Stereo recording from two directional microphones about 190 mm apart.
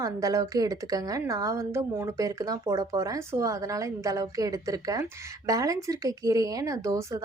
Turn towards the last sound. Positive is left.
turn(degrees=-15)  # may be behind; listen again after turning